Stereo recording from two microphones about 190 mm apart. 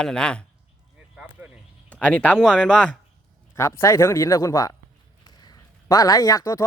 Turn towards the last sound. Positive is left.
turn(degrees=15)  # may be behind; listen again after turning